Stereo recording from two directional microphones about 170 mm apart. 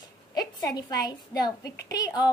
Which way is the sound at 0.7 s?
20° left (ahead or behind).